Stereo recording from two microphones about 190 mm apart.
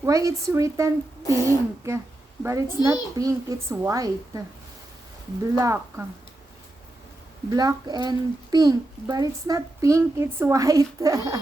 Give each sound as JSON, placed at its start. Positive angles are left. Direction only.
{"t": 0.0, "sound": "a child's voice", "side_deg": -15}
{"t": 5.5, "sound": "a child's voice", "side_deg": -15}
{"t": 7.5, "sound": "a child's voice", "side_deg": -20}